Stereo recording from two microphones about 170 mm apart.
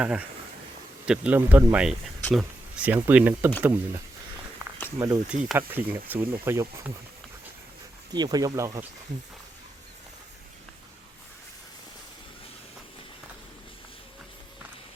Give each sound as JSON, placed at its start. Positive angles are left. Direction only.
{"t": 0.0, "sound": "speech", "side_deg": -10}
{"t": 8.1, "sound": "speech", "side_deg": -25}